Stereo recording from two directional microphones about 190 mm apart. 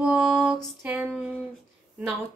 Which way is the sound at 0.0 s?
5° right (ahead or behind).